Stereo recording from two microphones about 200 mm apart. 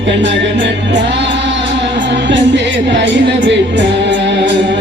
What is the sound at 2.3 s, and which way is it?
Music, 65° right (ahead or behind).